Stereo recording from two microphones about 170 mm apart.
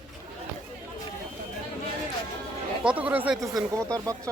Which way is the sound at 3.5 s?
20° right (ahead or behind).